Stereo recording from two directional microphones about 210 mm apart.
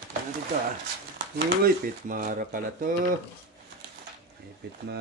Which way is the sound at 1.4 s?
45° right (ahead or behind).